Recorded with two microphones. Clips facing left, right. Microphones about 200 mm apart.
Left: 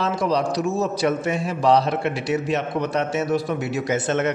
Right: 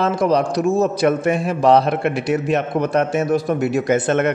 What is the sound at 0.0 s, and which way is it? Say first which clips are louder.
A man's voice: right 5 dB; 50° right (ahead or behind).